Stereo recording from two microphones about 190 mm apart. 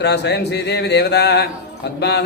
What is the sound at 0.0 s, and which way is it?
A man's voice, 60° left (ahead or behind).